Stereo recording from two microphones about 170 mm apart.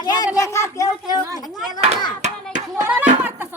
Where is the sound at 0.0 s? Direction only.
25° left (ahead or behind).